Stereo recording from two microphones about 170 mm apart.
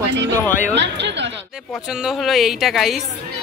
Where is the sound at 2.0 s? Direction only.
Centre (ahead or behind).